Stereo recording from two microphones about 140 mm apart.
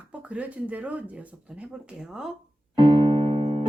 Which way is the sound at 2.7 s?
35° right (ahead or behind).